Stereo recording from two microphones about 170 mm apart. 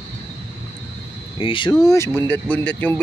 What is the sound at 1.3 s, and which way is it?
Speech, 30° left (ahead or behind).